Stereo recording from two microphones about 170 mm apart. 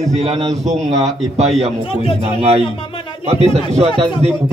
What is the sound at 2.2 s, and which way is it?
A man's voice, 40° right (ahead or behind).